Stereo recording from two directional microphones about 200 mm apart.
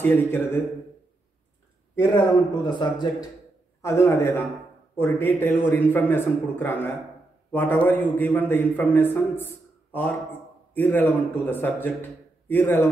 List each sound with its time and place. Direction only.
0.0 s a man's voice: 10° left (ahead or behind)
2.1 s a man's voice: 20° left (ahead or behind)